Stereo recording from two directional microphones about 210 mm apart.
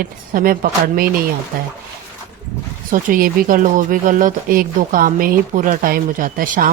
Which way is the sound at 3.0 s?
40° right (ahead or behind).